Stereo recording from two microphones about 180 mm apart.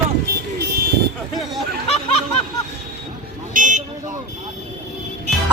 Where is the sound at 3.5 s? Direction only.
45° right (ahead or behind).